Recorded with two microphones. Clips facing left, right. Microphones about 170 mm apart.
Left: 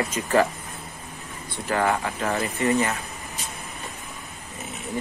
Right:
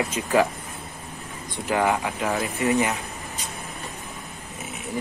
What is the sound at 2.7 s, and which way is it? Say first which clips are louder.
Speech: right 1 dB; 15° right (ahead or behind).